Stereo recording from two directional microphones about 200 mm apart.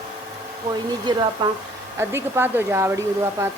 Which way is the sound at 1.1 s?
20° right (ahead or behind).